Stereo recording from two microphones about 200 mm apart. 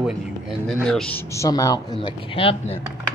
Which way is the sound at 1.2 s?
15° left (ahead or behind).